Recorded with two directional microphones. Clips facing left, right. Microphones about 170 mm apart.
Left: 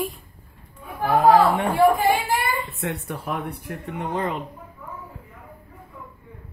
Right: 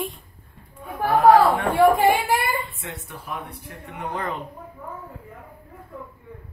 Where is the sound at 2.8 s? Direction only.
65° left (ahead or behind).